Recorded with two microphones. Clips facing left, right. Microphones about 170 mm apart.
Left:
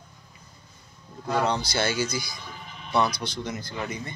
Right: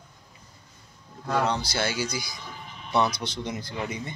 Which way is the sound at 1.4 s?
5° right (ahead or behind).